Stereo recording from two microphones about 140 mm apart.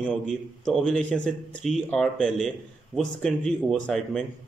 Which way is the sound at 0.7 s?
5° left (ahead or behind).